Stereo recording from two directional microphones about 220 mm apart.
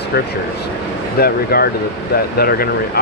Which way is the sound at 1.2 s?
45° left (ahead or behind).